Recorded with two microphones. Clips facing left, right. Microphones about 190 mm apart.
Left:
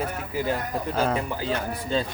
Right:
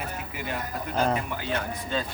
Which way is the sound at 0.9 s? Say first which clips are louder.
Even; 5° left (ahead or behind).